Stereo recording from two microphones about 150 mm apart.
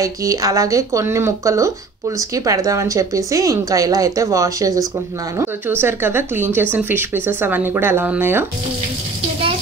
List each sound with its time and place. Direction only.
0.0 s a woman's voice: 20° right (ahead or behind)